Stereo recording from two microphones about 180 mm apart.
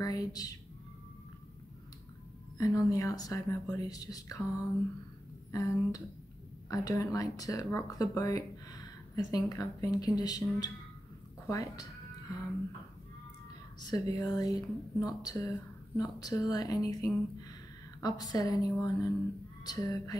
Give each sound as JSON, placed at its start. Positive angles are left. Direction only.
{"t": 0.0, "sound": "speech", "side_deg": 20}
{"t": 2.6, "sound": "speech", "side_deg": 20}
{"t": 11.4, "sound": "music", "side_deg": 20}
{"t": 13.7, "sound": "speech", "side_deg": 20}